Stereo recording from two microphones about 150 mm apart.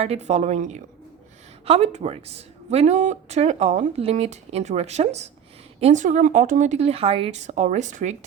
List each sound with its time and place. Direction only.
0.0 s speech: 45° right (ahead or behind)